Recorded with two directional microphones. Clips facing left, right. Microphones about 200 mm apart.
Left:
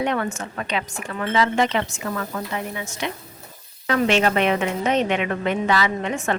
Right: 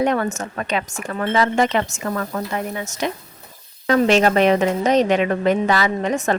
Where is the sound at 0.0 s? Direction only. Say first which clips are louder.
Right 4 dB; 40° right (ahead or behind).